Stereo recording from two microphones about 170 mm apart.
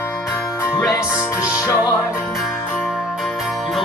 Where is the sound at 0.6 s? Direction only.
15° left (ahead or behind).